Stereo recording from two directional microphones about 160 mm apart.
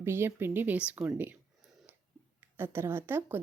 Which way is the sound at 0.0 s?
15° right (ahead or behind).